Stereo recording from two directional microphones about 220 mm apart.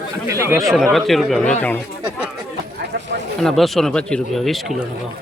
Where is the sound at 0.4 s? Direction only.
10° right (ahead or behind).